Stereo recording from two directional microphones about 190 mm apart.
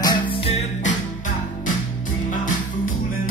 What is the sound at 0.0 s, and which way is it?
Music, 25° left (ahead or behind).